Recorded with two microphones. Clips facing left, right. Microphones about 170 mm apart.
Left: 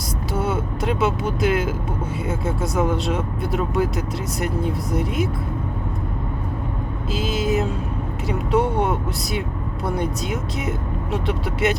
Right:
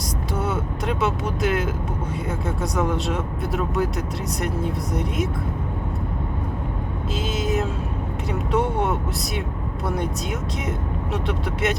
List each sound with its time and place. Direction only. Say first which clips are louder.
0.3 s speech: left 3 dB; centre (ahead or behind)
7.1 s speech: left 3 dB; centre (ahead or behind)